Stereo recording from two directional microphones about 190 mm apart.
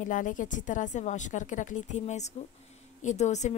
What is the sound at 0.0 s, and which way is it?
A woman's voice, 45° left (ahead or behind).